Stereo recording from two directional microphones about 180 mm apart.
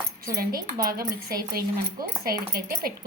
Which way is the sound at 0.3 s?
55° right (ahead or behind).